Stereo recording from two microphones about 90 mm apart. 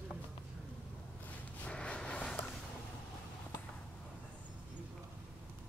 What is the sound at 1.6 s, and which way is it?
Snort, 10° left (ahead or behind).